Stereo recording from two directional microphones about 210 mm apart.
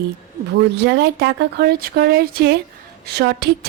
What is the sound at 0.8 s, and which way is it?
A woman's voice, 55° right (ahead or behind).